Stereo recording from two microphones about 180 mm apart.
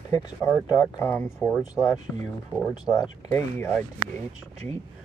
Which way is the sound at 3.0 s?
15° left (ahead or behind).